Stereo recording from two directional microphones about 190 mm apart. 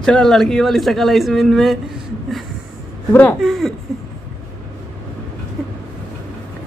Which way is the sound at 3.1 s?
5° left (ahead or behind).